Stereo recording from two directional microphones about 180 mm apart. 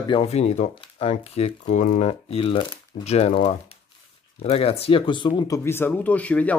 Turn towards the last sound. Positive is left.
turn(degrees=10)  # may be behind; listen again after turning